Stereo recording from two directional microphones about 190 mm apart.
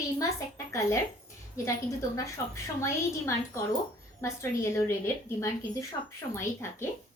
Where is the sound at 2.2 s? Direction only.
15° left (ahead or behind).